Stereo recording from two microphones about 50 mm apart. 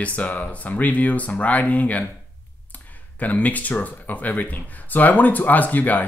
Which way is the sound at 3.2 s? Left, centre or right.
Left.